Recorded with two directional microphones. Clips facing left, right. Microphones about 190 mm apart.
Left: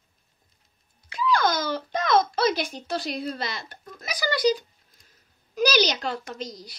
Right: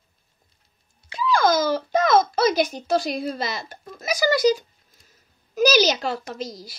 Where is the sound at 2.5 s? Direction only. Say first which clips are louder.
Right 6 dB; 40° right (ahead or behind).